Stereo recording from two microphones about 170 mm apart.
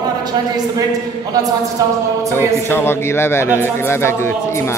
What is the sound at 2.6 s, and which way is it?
A man's voice, 15° left (ahead or behind).